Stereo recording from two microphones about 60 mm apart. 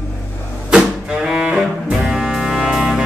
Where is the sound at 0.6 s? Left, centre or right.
Centre.